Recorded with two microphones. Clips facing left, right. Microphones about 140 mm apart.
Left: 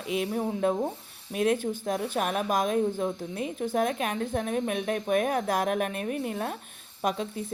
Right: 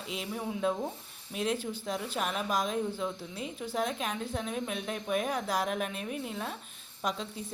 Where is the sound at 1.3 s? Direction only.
55° left (ahead or behind).